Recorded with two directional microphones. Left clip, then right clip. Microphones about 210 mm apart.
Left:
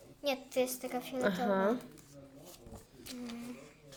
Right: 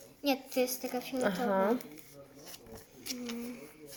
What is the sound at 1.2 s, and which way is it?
Speech, 10° left (ahead or behind).